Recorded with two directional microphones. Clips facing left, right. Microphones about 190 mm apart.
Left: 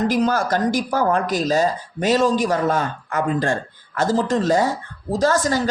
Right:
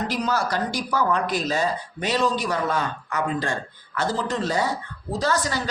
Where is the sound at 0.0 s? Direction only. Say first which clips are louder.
Left 6 dB; 50° left (ahead or behind).